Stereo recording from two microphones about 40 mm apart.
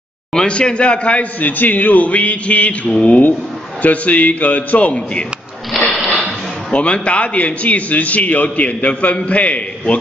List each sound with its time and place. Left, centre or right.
0.3 s a man's voice: left
1.4 s a man's voice: left
3.1 s a man's voice: left
5.7 s sewing machine: centre
6.7 s a man's voice: left